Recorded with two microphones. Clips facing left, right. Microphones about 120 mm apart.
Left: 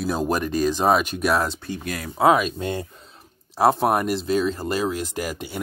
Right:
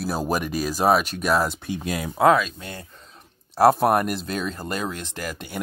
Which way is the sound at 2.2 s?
15° left (ahead or behind).